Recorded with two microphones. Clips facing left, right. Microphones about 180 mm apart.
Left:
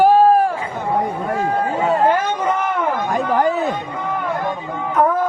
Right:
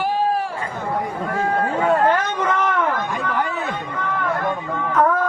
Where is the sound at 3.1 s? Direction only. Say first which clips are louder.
Left 6 dB; 40° left (ahead or behind).